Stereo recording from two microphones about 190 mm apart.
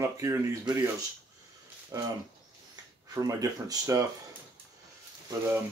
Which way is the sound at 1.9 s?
15° right (ahead or behind).